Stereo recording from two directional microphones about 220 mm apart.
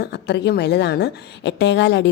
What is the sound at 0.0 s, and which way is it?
A woman's voice, 50° left (ahead or behind).